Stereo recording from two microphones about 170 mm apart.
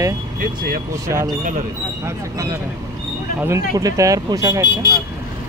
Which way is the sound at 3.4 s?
20° right (ahead or behind).